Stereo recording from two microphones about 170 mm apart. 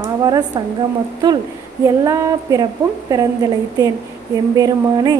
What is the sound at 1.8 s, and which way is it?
Speech, 20° right (ahead or behind).